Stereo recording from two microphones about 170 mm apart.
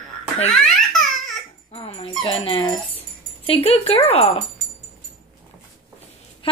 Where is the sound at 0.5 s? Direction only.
Centre (ahead or behind).